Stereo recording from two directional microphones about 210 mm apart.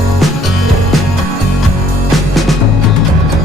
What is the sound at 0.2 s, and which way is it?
Music, centre (ahead or behind).